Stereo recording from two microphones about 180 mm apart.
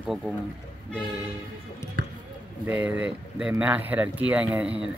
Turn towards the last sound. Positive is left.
turn(degrees=-10)  # may be behind; listen again after turning